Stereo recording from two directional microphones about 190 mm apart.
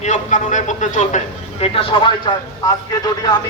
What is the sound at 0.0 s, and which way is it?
A man's voice, 40° left (ahead or behind).